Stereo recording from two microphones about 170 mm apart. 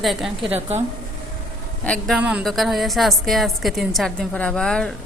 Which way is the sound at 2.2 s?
5° right (ahead or behind).